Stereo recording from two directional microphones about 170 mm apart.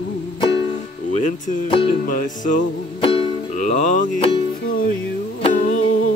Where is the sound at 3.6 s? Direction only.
45° left (ahead or behind).